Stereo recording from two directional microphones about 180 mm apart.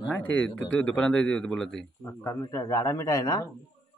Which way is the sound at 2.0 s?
15° left (ahead or behind).